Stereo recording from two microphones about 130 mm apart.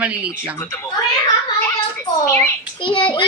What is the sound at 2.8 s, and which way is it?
Speech, 40° left (ahead or behind).